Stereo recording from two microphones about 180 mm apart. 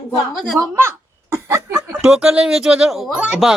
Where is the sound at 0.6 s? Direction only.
15° right (ahead or behind).